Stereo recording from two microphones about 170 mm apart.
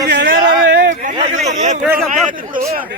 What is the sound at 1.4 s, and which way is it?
Speech, 45° right (ahead or behind).